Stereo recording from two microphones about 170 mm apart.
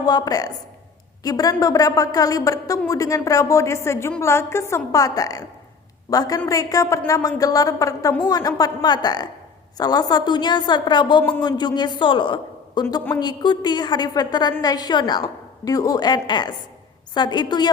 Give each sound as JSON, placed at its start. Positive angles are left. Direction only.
{"t": 0.0, "sound": "a woman's voice", "side_deg": 25}